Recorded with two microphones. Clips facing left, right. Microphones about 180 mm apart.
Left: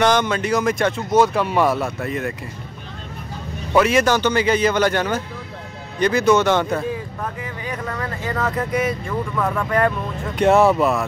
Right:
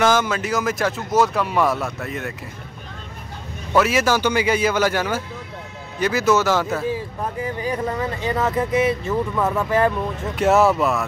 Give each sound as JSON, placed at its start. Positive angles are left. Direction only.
{"t": 0.0, "sound": "speech", "side_deg": -5}
{"t": 3.7, "sound": "a man's voice", "side_deg": -5}
{"t": 7.4, "sound": "speech", "side_deg": -30}
{"t": 10.3, "sound": "speech", "side_deg": 0}